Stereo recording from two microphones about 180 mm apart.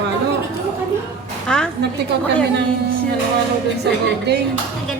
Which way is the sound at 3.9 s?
70° right (ahead or behind).